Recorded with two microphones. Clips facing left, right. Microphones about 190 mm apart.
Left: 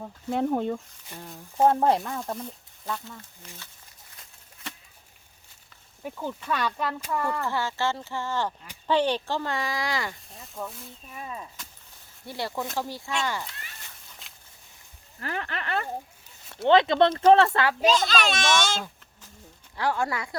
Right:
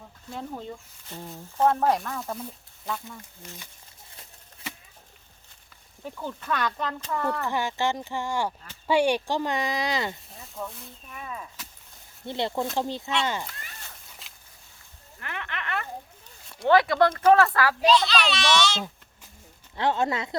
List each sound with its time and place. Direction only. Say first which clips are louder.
0.0 s speech: left 10 dB; 60° left (ahead or behind)
1.6 s speech: left 1 dB; 25° left (ahead or behind)
2.2 s speech: left 1 dB; centre (ahead or behind)
6.0 s speech: left 2 dB; 10° left (ahead or behind)
7.4 s speech: right 1 dB; 15° right (ahead or behind)
10.3 s a sound: even; centre (ahead or behind)
12.2 s speech: right 4 dB; 20° right (ahead or behind)
15.2 s speech: left 4 dB; 35° left (ahead or behind)
16.6 s speech: left 1 dB; 20° left (ahead or behind)
17.8 s a child's voice: right 2 dB; 45° left (ahead or behind)
19.7 s speech: right 2 dB; 20° right (ahead or behind)